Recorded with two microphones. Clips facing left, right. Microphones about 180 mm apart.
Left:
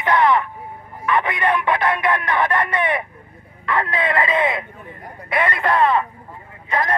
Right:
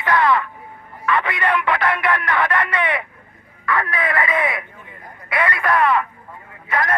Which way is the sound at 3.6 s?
25° left (ahead or behind).